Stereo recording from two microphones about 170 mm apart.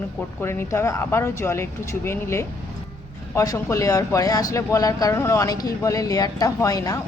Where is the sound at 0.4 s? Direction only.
15° left (ahead or behind).